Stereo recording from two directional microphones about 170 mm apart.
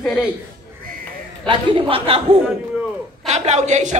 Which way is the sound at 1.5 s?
30° right (ahead or behind).